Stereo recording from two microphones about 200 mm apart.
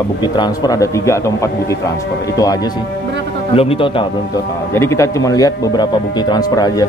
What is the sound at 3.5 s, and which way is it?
Speech, 30° left (ahead or behind).